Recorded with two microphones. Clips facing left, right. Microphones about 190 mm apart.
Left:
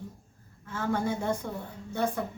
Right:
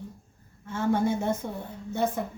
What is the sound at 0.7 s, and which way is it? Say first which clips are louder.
Speech: right 4 dB; 25° right (ahead or behind).